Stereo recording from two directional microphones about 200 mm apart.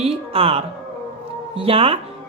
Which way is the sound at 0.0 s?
30° right (ahead or behind).